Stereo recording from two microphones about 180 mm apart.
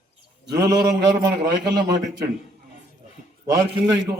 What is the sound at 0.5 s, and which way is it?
Speech, 20° right (ahead or behind).